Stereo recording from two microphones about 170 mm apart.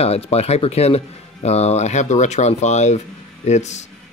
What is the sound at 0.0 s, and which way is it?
Speech, 35° left (ahead or behind).